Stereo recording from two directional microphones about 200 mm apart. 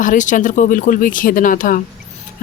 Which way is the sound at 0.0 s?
40° left (ahead or behind).